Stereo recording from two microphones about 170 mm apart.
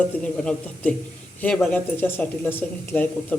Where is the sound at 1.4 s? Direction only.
10° left (ahead or behind).